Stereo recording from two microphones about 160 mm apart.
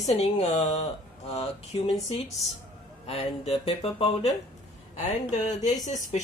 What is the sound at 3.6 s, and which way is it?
A woman's voice, 40° left (ahead or behind).